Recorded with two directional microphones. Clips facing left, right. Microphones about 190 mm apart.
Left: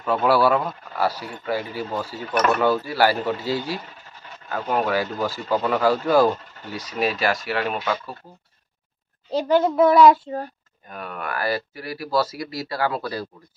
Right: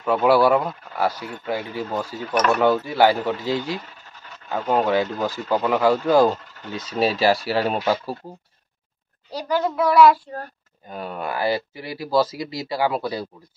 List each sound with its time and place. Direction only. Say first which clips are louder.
0.0 s speech: right 2 dB; 10° right (ahead or behind); by 8.2 s 35° right (ahead or behind)
9.3 s a child's voice: left 4 dB; 25° left (ahead or behind)
10.9 s speech: right 3 dB; 25° right (ahead or behind)